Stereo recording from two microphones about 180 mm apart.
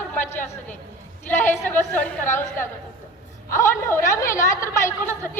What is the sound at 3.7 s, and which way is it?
A woman's voice, 15° left (ahead or behind).